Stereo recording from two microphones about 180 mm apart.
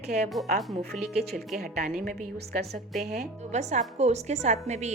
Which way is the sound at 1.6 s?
55° right (ahead or behind).